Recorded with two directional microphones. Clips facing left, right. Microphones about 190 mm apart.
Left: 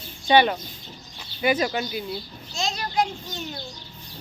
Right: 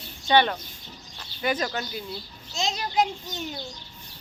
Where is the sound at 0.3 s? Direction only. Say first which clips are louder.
Left 3 dB; 10° left (ahead or behind).